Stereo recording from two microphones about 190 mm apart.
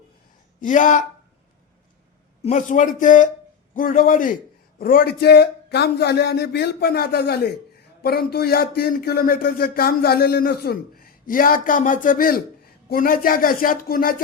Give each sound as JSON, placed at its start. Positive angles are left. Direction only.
{"t": 0.6, "sound": "a man's voice", "side_deg": 40}
{"t": 2.4, "sound": "a man's voice", "side_deg": 40}